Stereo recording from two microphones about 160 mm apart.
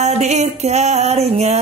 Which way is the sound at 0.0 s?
45° right (ahead or behind).